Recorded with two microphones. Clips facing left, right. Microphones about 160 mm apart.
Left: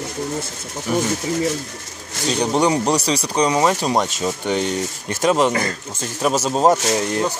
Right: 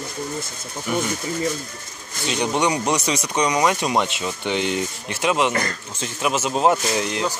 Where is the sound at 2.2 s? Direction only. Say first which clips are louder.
Left 3 dB; 35° left (ahead or behind).